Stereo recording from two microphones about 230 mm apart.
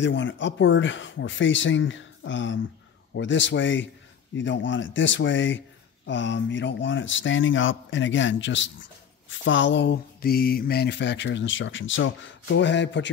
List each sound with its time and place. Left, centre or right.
0.0 s speech: left